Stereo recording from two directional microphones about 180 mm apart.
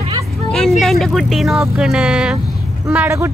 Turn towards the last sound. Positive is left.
turn(degrees=-15)  # may be behind; listen again after turning